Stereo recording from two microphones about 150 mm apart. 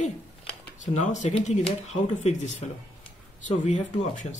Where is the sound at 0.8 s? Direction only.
55° left (ahead or behind).